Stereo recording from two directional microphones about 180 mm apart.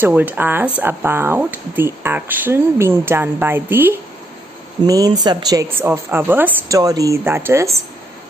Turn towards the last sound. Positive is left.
turn(degrees=-15)  # may be behind; listen again after turning